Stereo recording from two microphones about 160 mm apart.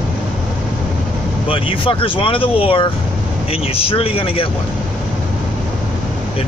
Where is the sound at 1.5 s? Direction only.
35° left (ahead or behind).